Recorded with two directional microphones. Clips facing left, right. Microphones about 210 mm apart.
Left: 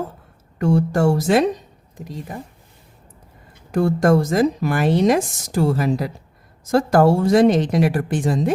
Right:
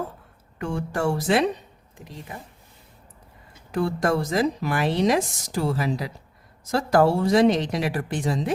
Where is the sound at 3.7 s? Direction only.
45° left (ahead or behind).